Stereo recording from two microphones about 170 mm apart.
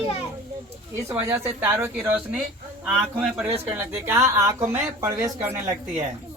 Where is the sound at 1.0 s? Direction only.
15° right (ahead or behind).